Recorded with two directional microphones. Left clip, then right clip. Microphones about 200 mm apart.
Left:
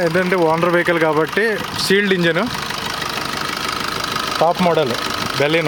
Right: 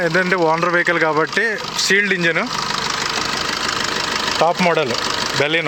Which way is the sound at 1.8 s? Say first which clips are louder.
Right 1 dB; 20° left (ahead or behind).